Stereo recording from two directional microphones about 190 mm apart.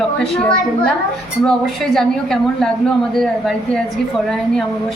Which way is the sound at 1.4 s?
Centre (ahead or behind).